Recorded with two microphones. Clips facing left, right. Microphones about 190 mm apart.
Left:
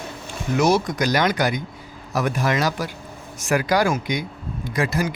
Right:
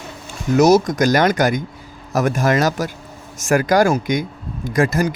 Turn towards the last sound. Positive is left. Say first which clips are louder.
# right 5 dB
turn(degrees=-45)  # may be behind; listen again after turning